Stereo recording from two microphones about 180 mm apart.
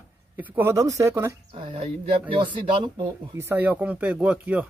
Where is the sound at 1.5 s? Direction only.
30° right (ahead or behind).